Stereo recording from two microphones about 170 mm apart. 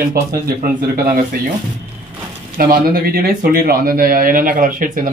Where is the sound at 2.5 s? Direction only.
60° right (ahead or behind).